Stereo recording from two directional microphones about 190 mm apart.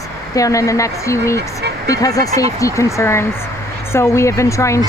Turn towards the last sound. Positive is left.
turn(degrees=15)  # may be behind; listen again after turning